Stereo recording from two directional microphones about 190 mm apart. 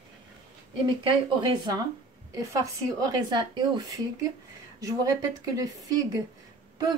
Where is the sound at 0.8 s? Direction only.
25° right (ahead or behind).